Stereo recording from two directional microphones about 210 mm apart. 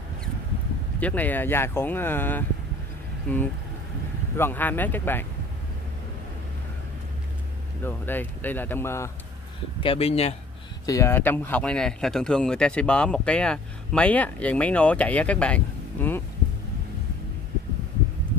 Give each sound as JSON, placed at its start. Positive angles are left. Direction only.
{"t": 0.9, "sound": "speech", "side_deg": 5}
{"t": 7.8, "sound": "speech", "side_deg": 10}
{"t": 9.8, "sound": "speech", "side_deg": 30}
{"t": 10.9, "sound": "speech", "side_deg": 15}